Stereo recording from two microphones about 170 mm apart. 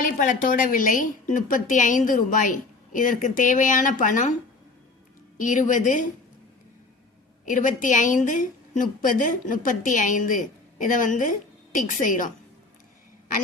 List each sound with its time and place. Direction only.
0.0 s a woman's voice: 50° left (ahead or behind)
5.4 s a woman's voice: 50° left (ahead or behind)
7.4 s a woman's voice: 50° left (ahead or behind)